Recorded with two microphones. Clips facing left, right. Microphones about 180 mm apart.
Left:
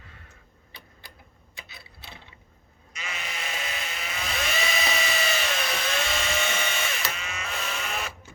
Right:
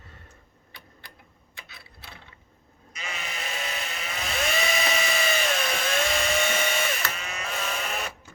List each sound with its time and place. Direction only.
2.9 s sheep: 40° right (ahead or behind)